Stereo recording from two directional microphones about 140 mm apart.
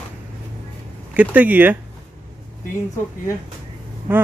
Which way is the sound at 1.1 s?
10° right (ahead or behind).